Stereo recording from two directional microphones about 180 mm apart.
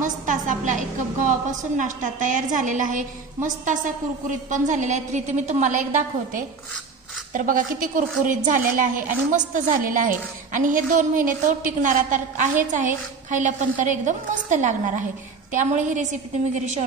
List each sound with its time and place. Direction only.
0.0 s a woman's voice: 45° right (ahead or behind)